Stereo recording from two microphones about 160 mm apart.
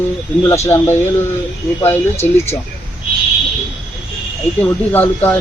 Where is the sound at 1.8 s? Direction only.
15° left (ahead or behind).